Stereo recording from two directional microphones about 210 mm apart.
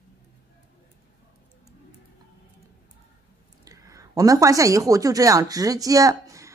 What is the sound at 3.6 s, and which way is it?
A woman's voice, 15° right (ahead or behind).